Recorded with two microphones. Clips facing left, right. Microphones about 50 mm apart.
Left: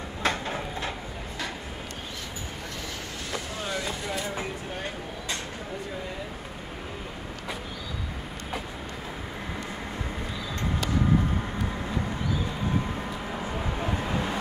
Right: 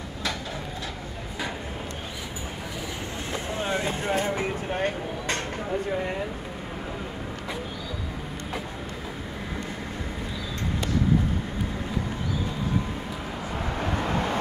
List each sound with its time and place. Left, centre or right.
0.2 s a sound: left
3.3 s vehicle: right
13.9 s vehicle: right